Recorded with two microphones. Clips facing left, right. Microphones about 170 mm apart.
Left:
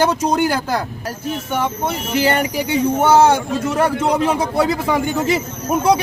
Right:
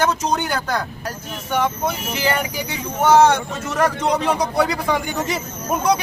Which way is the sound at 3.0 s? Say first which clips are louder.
Right 1 dB; 5° left (ahead or behind).